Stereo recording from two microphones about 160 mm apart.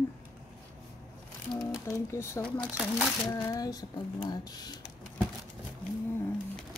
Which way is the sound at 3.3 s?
20° left (ahead or behind).